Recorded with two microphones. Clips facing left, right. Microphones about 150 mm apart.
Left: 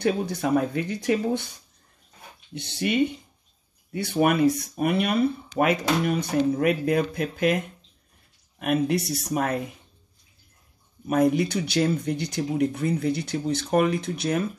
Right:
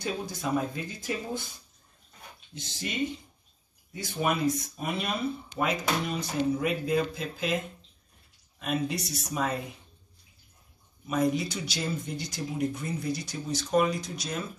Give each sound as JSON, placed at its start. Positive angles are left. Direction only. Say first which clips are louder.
{"t": 0.0, "sound": "speech", "louder": "left 8 dB", "side_deg": 65}
{"t": 2.5, "sound": "speech", "louder": "left 10 dB", "side_deg": 65}
{"t": 11.1, "sound": "speech", "louder": "left 6 dB", "side_deg": 60}